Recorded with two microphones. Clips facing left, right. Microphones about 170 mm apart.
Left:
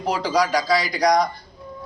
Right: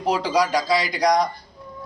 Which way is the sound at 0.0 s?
5° right (ahead or behind).